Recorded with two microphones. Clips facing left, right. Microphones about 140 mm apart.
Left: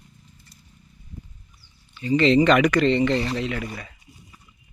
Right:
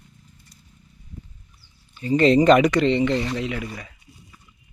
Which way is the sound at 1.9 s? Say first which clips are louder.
Right 1 dB; 45° right (ahead or behind).